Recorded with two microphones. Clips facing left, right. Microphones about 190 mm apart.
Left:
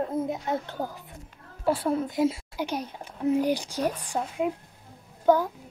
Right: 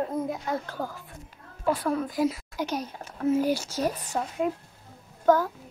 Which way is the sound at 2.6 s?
10° left (ahead or behind).